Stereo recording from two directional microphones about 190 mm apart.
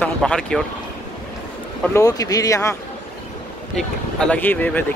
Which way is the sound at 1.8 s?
15° left (ahead or behind).